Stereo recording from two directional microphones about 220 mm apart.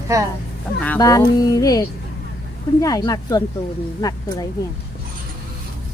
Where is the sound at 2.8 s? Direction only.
15° left (ahead or behind).